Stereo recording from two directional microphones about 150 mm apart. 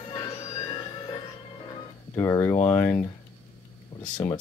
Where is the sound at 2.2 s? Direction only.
20° left (ahead or behind).